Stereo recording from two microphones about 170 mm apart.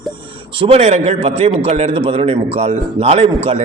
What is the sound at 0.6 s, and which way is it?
A man's voice, 35° right (ahead or behind).